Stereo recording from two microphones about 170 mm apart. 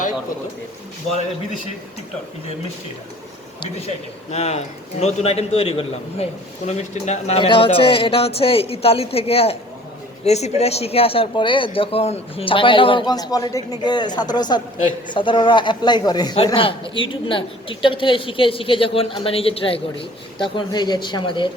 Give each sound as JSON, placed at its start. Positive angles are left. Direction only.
{"t": 3.6, "sound": "a man's voice", "side_deg": 35}
{"t": 7.3, "sound": "a man's voice", "side_deg": 30}